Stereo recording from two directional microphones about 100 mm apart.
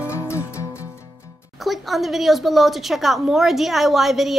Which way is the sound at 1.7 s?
Centre (ahead or behind).